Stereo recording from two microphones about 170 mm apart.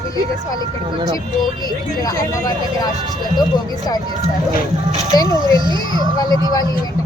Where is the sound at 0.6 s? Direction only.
30° right (ahead or behind).